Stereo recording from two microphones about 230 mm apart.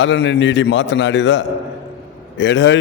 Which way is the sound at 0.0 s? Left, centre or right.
Left.